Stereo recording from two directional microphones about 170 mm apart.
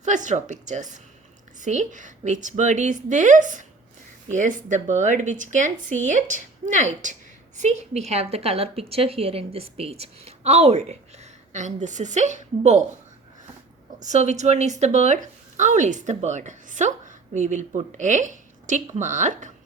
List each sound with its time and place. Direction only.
0.0 s a woman's voice: 45° right (ahead or behind)
14.0 s a woman's voice: 45° right (ahead or behind)